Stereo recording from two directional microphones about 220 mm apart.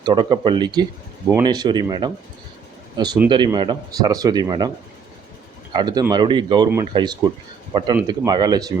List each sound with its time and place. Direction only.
0.0 s a man's voice: 20° right (ahead or behind)
5.7 s speech: 20° right (ahead or behind)